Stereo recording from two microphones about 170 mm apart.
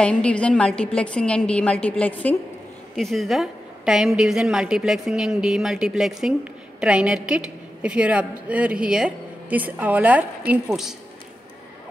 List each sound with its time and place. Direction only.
0.0 s a woman's voice: 5° left (ahead or behind)